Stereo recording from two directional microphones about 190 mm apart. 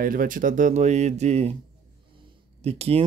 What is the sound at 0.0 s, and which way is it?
Speech, 45° right (ahead or behind).